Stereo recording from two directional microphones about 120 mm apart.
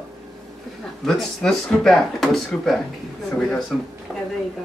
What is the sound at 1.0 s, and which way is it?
Speech, 5° left (ahead or behind).